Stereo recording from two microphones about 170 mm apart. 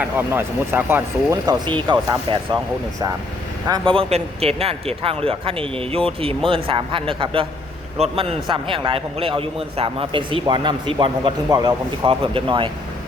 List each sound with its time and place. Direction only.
0.0 s speech: 10° right (ahead or behind)
3.7 s a man's voice: 30° right (ahead or behind)